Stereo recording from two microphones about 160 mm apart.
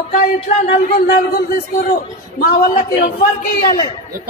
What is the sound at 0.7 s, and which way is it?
A man's voice, 80° left.